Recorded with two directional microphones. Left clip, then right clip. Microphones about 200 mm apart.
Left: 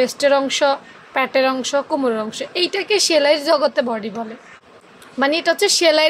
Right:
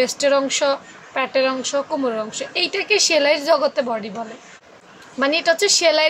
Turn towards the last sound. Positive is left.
turn(degrees=25)  # may be behind; listen again after turning